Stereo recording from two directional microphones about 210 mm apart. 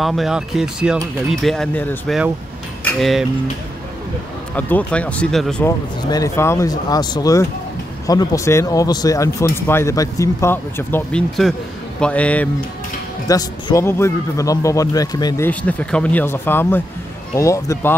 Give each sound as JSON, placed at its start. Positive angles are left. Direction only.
{"t": 0.0, "sound": "speech", "side_deg": 0}
{"t": 4.6, "sound": "speech", "side_deg": 5}
{"t": 5.7, "sound": "speech", "side_deg": 15}
{"t": 13.3, "sound": "speech", "side_deg": 15}